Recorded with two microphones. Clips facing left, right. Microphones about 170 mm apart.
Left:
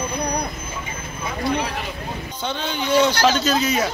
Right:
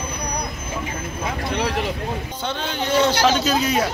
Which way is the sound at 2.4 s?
5° right (ahead or behind).